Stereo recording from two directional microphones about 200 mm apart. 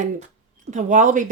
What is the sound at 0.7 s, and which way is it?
Speech, 40° right (ahead or behind).